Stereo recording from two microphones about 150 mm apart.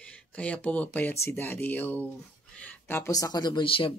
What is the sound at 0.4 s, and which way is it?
Speech, 10° left (ahead or behind).